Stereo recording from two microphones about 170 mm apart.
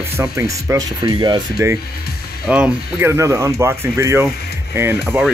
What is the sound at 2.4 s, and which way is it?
Speech, 5° right (ahead or behind).